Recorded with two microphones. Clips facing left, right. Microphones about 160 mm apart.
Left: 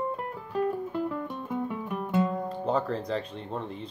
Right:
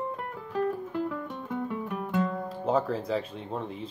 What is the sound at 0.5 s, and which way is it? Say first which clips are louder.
Music: left 1 dB; 5° left (ahead or behind).